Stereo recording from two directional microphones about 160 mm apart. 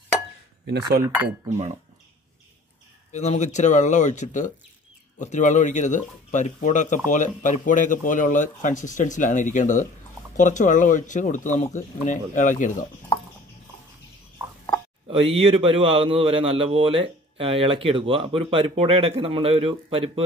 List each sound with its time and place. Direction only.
1.0 s speech: 15° right (ahead or behind)
3.1 s speech: 45° left (ahead or behind)
15.0 s a man's voice: 35° right (ahead or behind)